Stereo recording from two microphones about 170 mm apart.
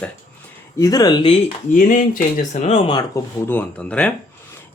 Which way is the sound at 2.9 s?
20° left (ahead or behind).